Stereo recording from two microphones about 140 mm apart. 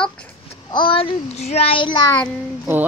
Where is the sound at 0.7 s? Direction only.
35° left (ahead or behind).